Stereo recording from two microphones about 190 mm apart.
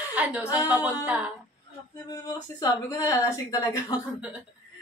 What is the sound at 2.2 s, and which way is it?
Speech, 20° left (ahead or behind).